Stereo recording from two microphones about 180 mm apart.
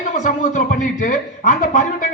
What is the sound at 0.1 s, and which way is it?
A man's voice, 45° left (ahead or behind).